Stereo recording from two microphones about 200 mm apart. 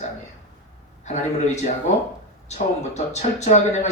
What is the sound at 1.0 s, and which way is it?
Speech, 35° left (ahead or behind).